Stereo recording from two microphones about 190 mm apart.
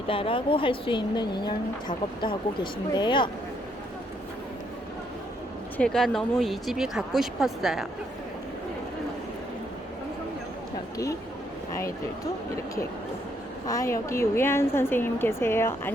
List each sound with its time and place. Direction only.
0.1 s a woman's voice: 30° left (ahead or behind)
5.7 s speech: 5° left (ahead or behind)
10.9 s speech: 15° left (ahead or behind)
13.7 s a woman's voice: 15° left (ahead or behind)